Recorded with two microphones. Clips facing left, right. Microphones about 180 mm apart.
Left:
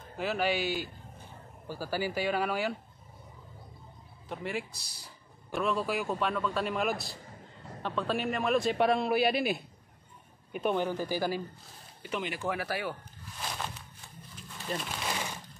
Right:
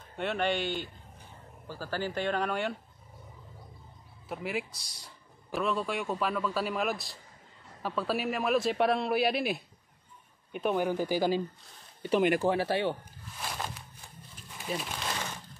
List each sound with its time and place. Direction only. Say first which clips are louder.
0.2 s speech: even; 5° left (ahead or behind)
4.3 s speech: right 1 dB; 5° right (ahead or behind)
10.8 s speech: right 3 dB; 15° right (ahead or behind)
12.4 s speech: right 6 dB; 30° right (ahead or behind)
13.4 s a sound: even; 5° right (ahead or behind)
14.6 s speech: right 1 dB; 5° right (ahead or behind)
15.0 s a sound: left 1 dB; 10° left (ahead or behind)